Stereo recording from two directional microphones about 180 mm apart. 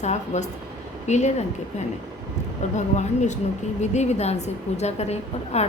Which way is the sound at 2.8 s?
40° left (ahead or behind).